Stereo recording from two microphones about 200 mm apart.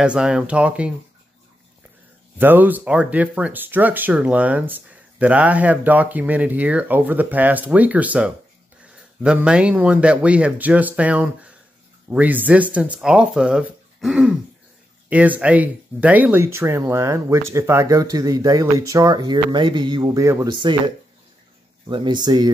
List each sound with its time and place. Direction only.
0.0 s speech: 5° right (ahead or behind)
2.3 s speech: 10° right (ahead or behind)